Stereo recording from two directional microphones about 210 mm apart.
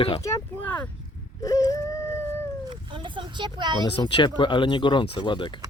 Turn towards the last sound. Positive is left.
turn(degrees=20)  # may be behind; listen again after turning